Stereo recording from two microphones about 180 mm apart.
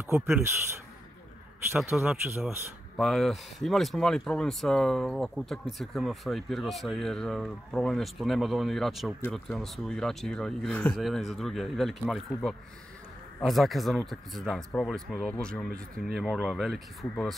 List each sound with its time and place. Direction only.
0.0 s a man's voice: 10° right (ahead or behind)
1.8 s speech: centre (ahead or behind)